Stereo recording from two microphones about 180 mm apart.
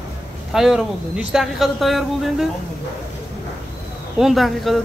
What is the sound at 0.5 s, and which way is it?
Speech, centre (ahead or behind).